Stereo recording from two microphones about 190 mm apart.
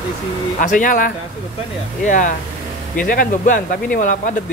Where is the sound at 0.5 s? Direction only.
45° left (ahead or behind).